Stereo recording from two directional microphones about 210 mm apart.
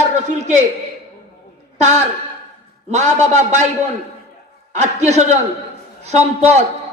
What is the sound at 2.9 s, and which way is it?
Speech, 35° right (ahead or behind).